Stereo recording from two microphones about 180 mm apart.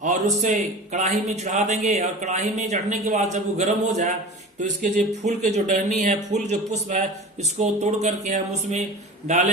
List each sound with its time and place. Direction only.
0.0 s a man's voice: 40° right (ahead or behind)